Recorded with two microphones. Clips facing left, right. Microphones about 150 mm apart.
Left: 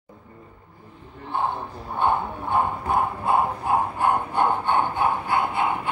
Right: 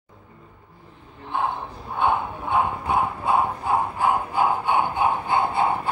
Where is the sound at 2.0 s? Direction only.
10° right (ahead or behind).